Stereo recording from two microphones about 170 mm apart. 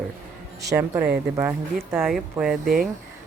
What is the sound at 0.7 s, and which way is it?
A woman's voice, 15° right (ahead or behind).